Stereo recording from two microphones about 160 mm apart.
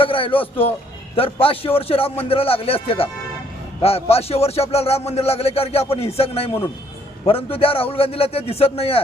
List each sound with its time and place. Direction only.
0.0 s a man's voice: 35° left (ahead or behind)